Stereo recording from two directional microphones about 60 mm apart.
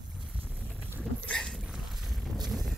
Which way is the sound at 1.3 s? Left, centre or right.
Centre.